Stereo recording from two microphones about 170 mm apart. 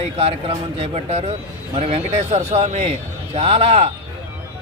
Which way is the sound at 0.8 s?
40° right (ahead or behind).